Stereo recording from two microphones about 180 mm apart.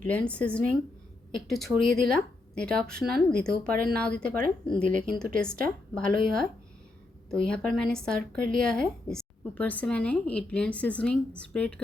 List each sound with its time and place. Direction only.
0.0 s a woman's voice: 10° left (ahead or behind)
4.6 s speech: 25° left (ahead or behind)
5.2 s speech: 5° left (ahead or behind)
7.3 s speech: 5° left (ahead or behind)